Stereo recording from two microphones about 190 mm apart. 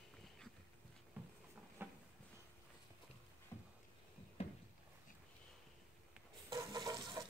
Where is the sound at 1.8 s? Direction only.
10° right (ahead or behind).